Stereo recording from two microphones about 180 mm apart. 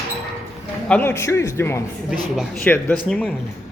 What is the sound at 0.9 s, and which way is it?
A man's voice, 10° left (ahead or behind).